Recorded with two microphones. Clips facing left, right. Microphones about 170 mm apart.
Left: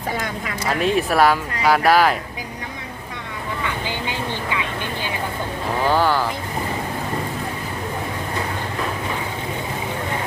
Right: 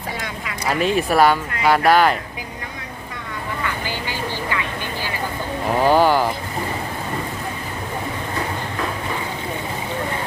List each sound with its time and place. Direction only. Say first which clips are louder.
0.7 s speech: right 1 dB; centre (ahead or behind)
3.8 s vehicle: left 1 dB; 20° left (ahead or behind)
5.8 s speech: right 3 dB; 15° right (ahead or behind)